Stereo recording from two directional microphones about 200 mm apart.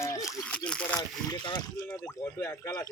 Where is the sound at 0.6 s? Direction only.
5° left (ahead or behind).